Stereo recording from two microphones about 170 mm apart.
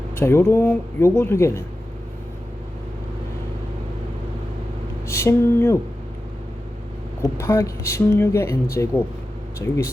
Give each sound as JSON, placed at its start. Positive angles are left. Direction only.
{"t": 0.2, "sound": "speech", "side_deg": 15}
{"t": 5.0, "sound": "speech", "side_deg": 15}
{"t": 7.2, "sound": "speech", "side_deg": 15}